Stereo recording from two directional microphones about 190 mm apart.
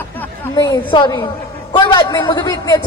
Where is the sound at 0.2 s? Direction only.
20° left (ahead or behind).